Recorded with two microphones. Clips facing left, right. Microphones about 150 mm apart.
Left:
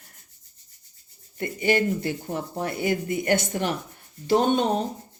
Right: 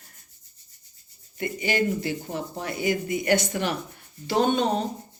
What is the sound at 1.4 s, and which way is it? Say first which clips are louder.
Speech: left 3 dB; 50° left (ahead or behind).